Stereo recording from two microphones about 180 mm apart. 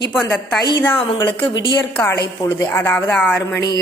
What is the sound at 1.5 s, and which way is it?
Speech, 90° left.